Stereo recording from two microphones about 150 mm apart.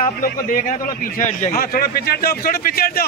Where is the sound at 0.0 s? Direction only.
60° left (ahead or behind); by 3.1 s 90° left.